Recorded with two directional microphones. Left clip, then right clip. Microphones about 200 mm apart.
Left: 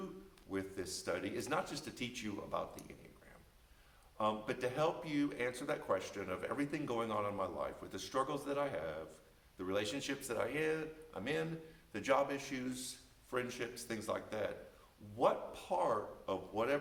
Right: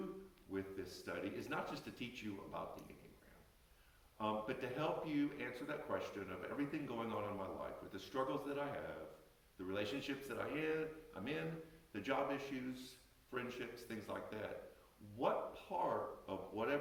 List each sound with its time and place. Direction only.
0.5 s speech: 35° left (ahead or behind)
4.2 s speech: 35° left (ahead or behind)